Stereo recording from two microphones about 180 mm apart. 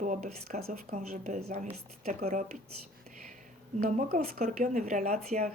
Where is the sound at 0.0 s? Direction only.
40° right (ahead or behind).